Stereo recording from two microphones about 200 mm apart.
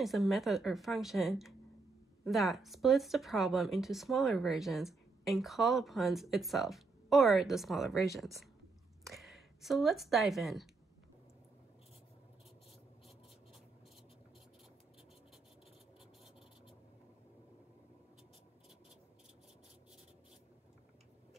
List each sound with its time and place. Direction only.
0.0 s speech: centre (ahead or behind)